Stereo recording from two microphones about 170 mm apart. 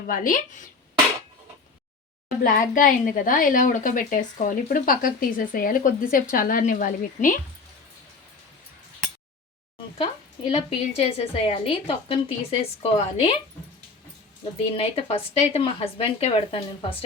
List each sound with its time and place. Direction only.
0.1 s a woman's voice: 55° left (ahead or behind)
2.4 s a woman's voice: 55° left (ahead or behind)
10.0 s a woman's voice: 30° left (ahead or behind)
14.8 s a woman's voice: 35° left (ahead or behind)